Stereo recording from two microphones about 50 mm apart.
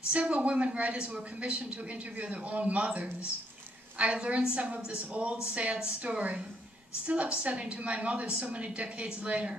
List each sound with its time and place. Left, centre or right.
0.1 s a woman's voice: right